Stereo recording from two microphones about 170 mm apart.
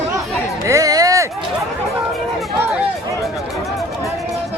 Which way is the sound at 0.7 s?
20° right (ahead or behind).